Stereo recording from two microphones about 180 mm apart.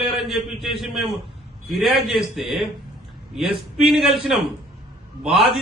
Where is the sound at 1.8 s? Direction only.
Centre (ahead or behind).